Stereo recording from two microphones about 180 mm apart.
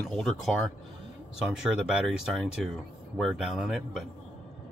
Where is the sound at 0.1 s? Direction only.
Centre (ahead or behind).